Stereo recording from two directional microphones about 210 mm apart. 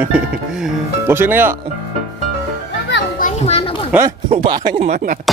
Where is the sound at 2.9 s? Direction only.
55° left (ahead or behind).